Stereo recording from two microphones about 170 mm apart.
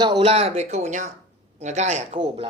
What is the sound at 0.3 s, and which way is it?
Speech, 35° right (ahead or behind).